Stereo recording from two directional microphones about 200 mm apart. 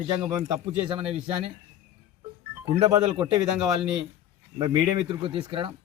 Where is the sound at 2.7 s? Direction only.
20° right (ahead or behind).